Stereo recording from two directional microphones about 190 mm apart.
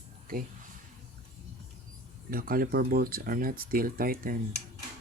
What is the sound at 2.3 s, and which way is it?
Speech, 50° right (ahead or behind).